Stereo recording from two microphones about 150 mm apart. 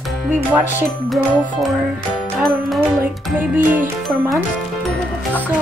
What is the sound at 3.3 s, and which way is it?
Speech, 10° right (ahead or behind).